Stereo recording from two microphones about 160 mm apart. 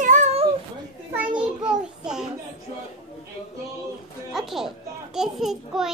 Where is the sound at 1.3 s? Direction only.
5° right (ahead or behind).